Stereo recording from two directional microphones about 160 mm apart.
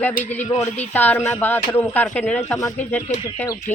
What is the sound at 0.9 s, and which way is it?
Speech, 10° left (ahead or behind).